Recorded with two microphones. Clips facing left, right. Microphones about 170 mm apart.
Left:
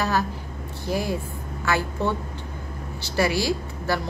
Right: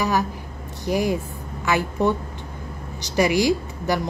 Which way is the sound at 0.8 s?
15° right (ahead or behind).